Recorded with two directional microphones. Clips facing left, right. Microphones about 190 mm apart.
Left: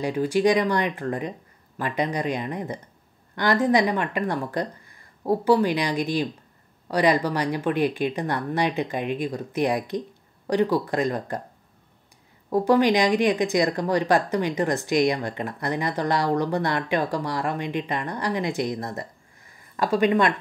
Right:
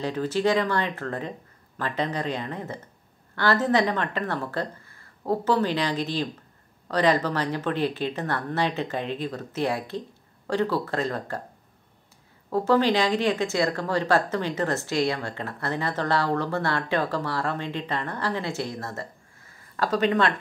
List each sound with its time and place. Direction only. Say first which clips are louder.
0.0 s speech: left 3 dB; 15° left (ahead or behind)
12.4 s speech: left 2 dB; 15° left (ahead or behind)